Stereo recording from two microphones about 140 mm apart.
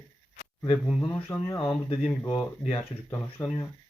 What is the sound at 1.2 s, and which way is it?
Speech, 15° left (ahead or behind).